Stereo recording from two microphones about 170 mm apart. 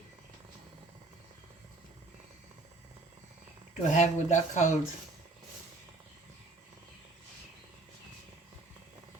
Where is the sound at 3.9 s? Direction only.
45° left (ahead or behind).